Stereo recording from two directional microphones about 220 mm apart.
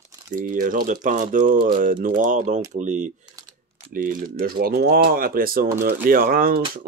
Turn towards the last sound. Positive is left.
turn(degrees=-40)  # may be behind; listen again after turning